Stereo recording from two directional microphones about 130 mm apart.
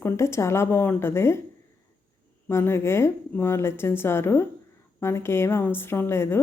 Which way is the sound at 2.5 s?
20° left (ahead or behind).